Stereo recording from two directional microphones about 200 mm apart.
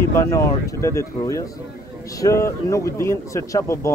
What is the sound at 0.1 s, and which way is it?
Speech, 15° left (ahead or behind).